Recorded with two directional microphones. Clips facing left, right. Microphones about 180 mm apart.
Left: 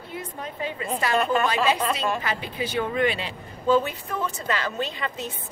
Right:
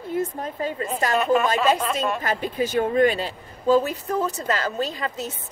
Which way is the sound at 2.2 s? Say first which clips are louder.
Right 5 dB; 45° right (ahead or behind).